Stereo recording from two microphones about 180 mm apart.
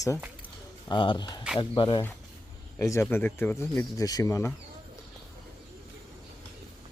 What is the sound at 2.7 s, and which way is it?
Speech, 15° left (ahead or behind).